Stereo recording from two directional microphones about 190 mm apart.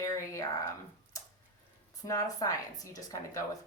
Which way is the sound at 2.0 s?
15° left (ahead or behind).